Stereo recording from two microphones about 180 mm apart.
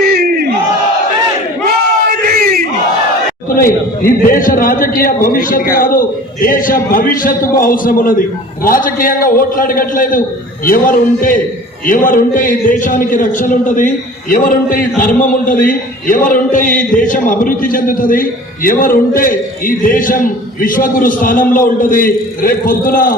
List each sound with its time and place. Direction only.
0.0 s crowd: 60° right (ahead or behind)
3.5 s a man's voice: 50° left (ahead or behind)